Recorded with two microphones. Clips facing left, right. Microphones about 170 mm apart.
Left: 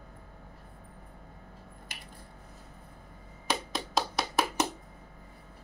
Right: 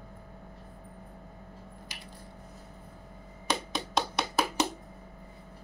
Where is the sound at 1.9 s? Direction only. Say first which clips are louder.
Right 1 dB; 55° left (ahead or behind).